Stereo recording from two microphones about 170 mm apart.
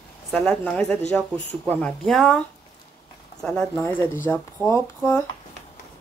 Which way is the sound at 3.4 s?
5° left (ahead or behind).